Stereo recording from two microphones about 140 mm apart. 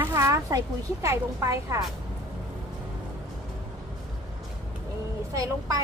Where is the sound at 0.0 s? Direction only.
20° right (ahead or behind).